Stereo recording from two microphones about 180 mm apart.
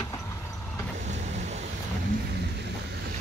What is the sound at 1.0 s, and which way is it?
Vehicle, 40° right (ahead or behind).